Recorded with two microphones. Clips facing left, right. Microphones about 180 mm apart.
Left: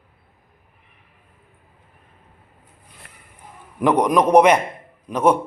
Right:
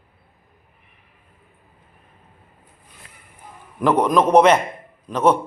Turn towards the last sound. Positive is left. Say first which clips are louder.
# even
turn(degrees=10)  # may be behind; listen again after turning